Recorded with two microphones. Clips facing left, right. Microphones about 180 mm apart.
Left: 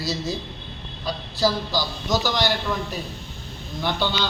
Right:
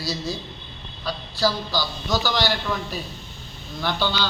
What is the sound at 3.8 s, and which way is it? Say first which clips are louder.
Speech: even; 20° left (ahead or behind).